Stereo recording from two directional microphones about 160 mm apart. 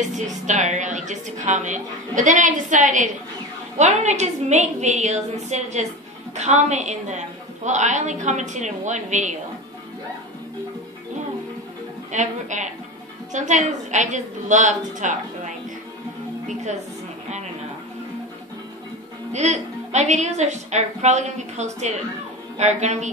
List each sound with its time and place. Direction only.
0.0 s a woman's voice: 50° right (ahead or behind)
12.1 s a woman's voice: 50° right (ahead or behind)
19.3 s a woman's voice: 45° right (ahead or behind)